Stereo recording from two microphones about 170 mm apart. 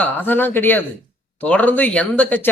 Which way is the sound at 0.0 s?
10° left (ahead or behind).